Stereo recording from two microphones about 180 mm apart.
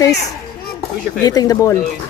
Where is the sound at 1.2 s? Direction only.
20° left (ahead or behind).